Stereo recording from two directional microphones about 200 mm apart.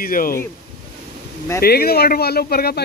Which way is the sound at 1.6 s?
50° left (ahead or behind).